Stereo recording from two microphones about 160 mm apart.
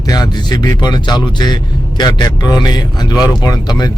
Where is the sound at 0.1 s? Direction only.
25° left (ahead or behind).